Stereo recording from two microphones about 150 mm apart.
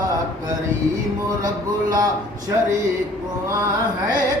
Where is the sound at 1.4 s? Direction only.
65° right (ahead or behind).